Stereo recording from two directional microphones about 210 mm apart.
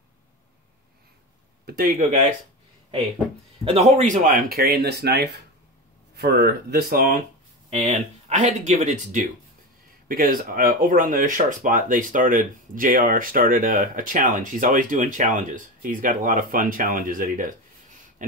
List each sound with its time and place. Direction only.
1.7 s speech: 40° right (ahead or behind)
3.6 s speech: 30° right (ahead or behind)
7.8 s speech: 35° right (ahead or behind)